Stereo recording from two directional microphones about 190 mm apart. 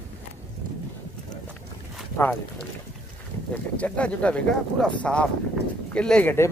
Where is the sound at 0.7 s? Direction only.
45° right (ahead or behind).